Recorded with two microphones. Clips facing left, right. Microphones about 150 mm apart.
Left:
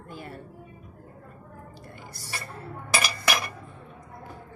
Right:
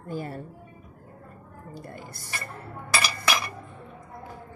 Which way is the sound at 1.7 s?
50° right (ahead or behind).